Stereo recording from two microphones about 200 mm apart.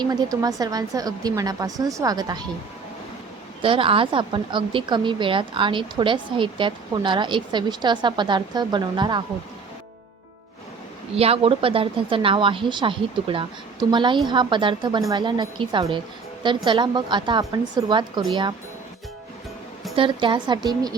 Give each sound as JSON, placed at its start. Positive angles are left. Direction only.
{"t": 0.0, "sound": "speech", "side_deg": -20}
{"t": 3.6, "sound": "speech", "side_deg": -25}
{"t": 11.1, "sound": "speech", "side_deg": -30}
{"t": 20.0, "sound": "speech", "side_deg": -25}